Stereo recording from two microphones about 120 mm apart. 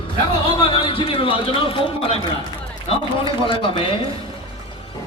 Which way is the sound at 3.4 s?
45° left (ahead or behind).